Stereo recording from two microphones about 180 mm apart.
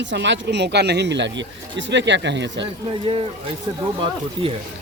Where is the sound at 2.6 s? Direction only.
30° right (ahead or behind).